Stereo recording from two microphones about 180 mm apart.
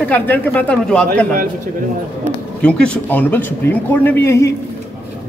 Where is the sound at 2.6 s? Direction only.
5° left (ahead or behind).